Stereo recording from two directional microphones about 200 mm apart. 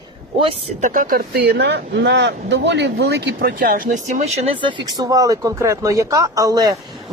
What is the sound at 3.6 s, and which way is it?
Speech, 45° right (ahead or behind).